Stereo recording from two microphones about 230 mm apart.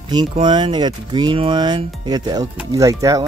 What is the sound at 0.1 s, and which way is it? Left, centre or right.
A child's voice, centre.